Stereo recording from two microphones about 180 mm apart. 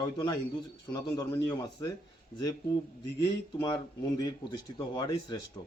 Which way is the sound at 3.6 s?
25° left (ahead or behind).